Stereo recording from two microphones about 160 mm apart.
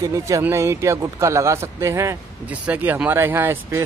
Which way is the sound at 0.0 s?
20° right (ahead or behind).